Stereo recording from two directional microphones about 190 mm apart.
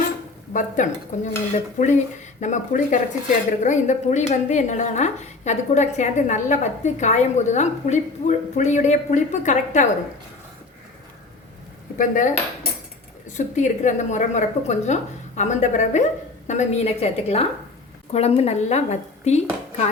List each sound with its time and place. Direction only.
0.5 s speech: 40° left (ahead or behind)
11.9 s speech: 45° left (ahead or behind)
13.3 s speech: 40° left (ahead or behind)